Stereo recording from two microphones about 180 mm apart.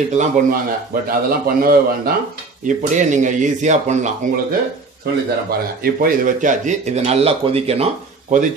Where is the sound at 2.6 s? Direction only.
45° right (ahead or behind).